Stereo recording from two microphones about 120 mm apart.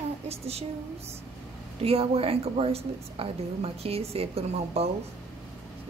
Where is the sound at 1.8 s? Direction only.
55° right (ahead or behind).